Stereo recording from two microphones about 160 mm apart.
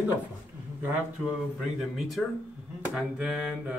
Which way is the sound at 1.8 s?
Centre (ahead or behind).